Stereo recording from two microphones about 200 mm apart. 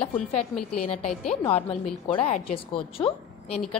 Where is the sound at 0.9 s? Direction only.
5° left (ahead or behind).